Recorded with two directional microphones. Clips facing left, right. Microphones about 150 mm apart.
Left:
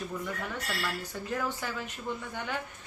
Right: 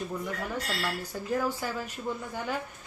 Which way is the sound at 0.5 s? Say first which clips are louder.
Right 2 dB; 10° right (ahead or behind).